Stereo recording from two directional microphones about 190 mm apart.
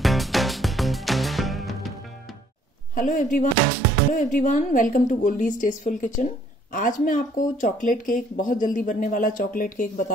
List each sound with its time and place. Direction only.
0.0 s music: centre (ahead or behind)
2.9 s a woman's voice: 45° left (ahead or behind)